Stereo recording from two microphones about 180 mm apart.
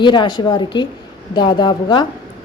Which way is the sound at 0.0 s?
25° left (ahead or behind).